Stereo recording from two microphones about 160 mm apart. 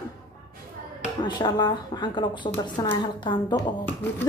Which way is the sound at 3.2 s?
30° left (ahead or behind).